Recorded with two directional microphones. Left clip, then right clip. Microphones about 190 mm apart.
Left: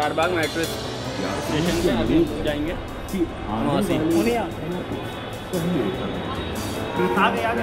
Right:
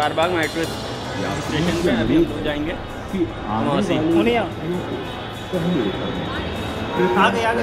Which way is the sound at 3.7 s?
5° left (ahead or behind).